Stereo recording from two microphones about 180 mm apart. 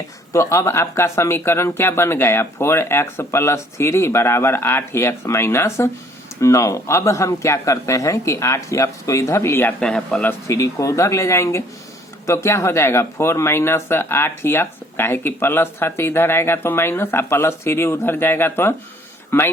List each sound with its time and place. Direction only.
0.3 s speech: 15° left (ahead or behind)
10.4 s speech: 15° left (ahead or behind)